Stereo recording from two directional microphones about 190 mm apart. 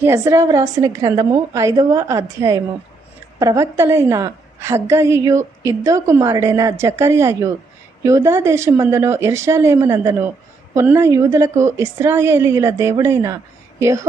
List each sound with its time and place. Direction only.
0.0 s a woman's voice: 15° right (ahead or behind)